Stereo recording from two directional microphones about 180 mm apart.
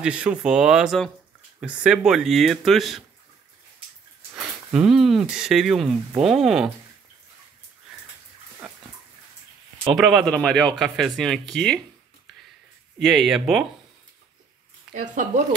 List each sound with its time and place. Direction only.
0.0 s speech: 5° right (ahead or behind)
4.7 s speech: centre (ahead or behind)
9.9 s speech: centre (ahead or behind)
13.0 s speech: centre (ahead or behind)
15.0 s speech: 45° right (ahead or behind)